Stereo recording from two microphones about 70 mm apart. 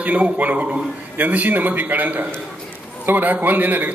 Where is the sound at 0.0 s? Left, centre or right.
Right.